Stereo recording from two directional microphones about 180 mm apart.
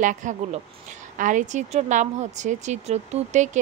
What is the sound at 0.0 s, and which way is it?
Speech, 45° right (ahead or behind).